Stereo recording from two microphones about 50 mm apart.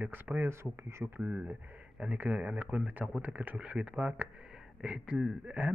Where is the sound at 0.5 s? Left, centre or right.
Right.